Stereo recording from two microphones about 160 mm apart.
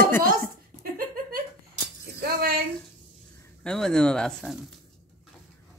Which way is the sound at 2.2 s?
70° right (ahead or behind).